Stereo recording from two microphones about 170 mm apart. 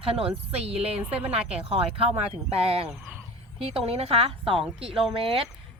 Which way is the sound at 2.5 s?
35° right (ahead or behind).